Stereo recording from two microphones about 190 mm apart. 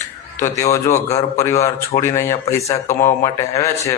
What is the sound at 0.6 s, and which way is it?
Speech, 15° left (ahead or behind).